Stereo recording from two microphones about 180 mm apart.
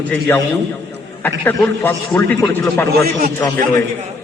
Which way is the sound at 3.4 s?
10° left (ahead or behind).